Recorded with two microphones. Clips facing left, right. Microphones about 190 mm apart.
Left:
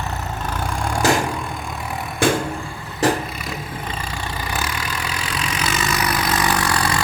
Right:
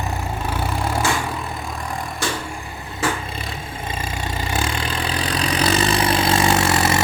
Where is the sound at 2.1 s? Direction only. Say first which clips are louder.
Left 10 dB; 55° left (ahead or behind).